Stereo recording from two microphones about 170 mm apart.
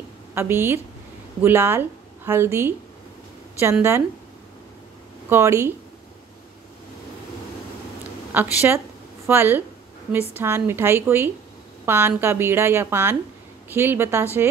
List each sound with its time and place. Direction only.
0.3 s a woman's voice: 15° right (ahead or behind)
5.3 s a woman's voice: 15° right (ahead or behind)
8.3 s a woman's voice: 10° right (ahead or behind)